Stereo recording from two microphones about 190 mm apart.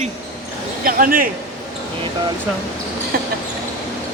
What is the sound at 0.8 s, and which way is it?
Speech, 50° right (ahead or behind).